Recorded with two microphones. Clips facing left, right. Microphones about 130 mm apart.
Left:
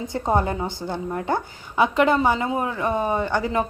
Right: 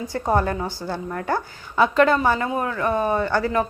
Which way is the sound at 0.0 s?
20° left (ahead or behind).